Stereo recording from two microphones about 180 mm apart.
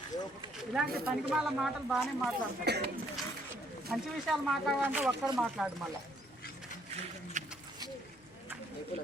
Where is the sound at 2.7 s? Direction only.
65° right (ahead or behind).